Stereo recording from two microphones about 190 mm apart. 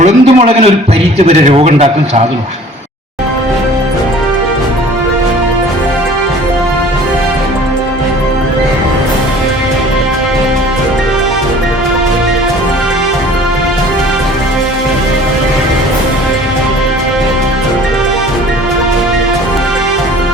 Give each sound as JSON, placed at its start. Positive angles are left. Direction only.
{"t": 0.0, "sound": "a man's voice", "side_deg": -35}